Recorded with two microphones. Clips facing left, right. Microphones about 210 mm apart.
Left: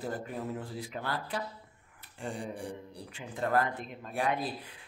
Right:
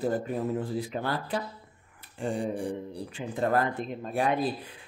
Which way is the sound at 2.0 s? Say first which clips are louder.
Right 8 dB; 25° right (ahead or behind).